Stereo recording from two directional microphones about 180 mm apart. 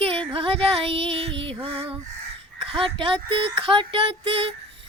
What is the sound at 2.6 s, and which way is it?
Speech, 30° right (ahead or behind).